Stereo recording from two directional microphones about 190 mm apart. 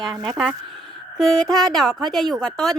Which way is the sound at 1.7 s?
Centre (ahead or behind).